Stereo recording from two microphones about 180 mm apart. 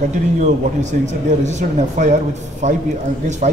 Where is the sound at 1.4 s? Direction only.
40° right (ahead or behind).